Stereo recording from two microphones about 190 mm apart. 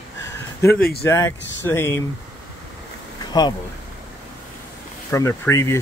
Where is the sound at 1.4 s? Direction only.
75° left (ahead or behind).